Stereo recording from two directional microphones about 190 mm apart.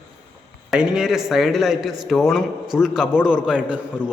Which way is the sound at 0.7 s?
5° right (ahead or behind).